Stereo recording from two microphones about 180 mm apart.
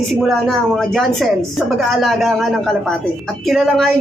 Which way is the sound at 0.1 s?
Centre (ahead or behind).